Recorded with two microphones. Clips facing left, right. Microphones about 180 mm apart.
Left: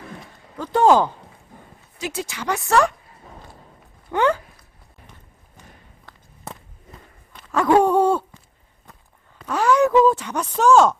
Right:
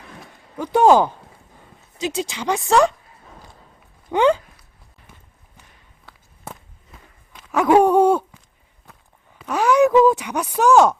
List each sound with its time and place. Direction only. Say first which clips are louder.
0.5 s speech: right 2 dB; 15° right (ahead or behind)
4.1 s speech: right 3 dB; 20° right (ahead or behind)
6.1 s walk: even; 5° right (ahead or behind)
7.3 s dog: right 2 dB; 5° right (ahead or behind)
9.4 s a sound: right 2 dB; 15° right (ahead or behind)
10.0 s speech: right 2 dB; 15° right (ahead or behind)